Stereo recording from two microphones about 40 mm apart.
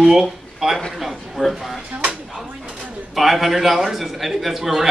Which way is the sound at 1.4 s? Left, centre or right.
Centre.